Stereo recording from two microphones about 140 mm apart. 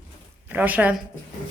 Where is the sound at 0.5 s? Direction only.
10° right (ahead or behind).